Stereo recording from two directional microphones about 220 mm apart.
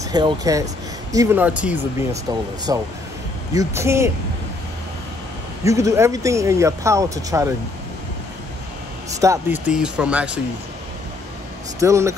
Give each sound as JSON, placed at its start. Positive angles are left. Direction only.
{"t": 0.1, "sound": "speech", "side_deg": -15}
{"t": 5.6, "sound": "speech", "side_deg": -15}
{"t": 9.2, "sound": "speech", "side_deg": -10}
{"t": 11.8, "sound": "speech", "side_deg": -15}